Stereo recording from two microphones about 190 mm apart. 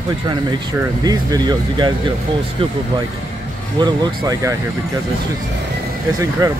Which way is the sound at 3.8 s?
25° right (ahead or behind).